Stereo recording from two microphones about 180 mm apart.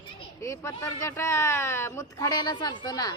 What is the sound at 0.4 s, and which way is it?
Speech, 15° left (ahead or behind).